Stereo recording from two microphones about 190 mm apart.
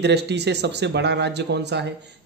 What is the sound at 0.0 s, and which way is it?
A man's voice, 60° right (ahead or behind).